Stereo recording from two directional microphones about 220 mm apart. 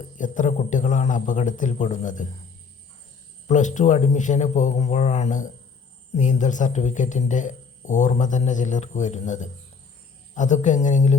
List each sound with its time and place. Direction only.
0.2 s speech: 35° left (ahead or behind)
3.4 s speech: 30° left (ahead or behind)